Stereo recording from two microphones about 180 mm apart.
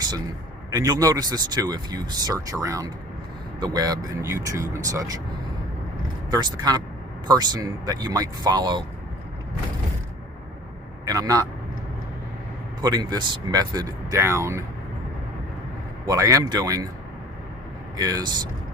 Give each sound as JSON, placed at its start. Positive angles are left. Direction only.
{"t": 0.7, "sound": "speech", "side_deg": -20}
{"t": 6.3, "sound": "speech", "side_deg": -20}
{"t": 11.0, "sound": "a man's voice", "side_deg": -20}
{"t": 12.8, "sound": "speech", "side_deg": -20}
{"t": 16.0, "sound": "speech", "side_deg": -20}
{"t": 17.9, "sound": "speech", "side_deg": -20}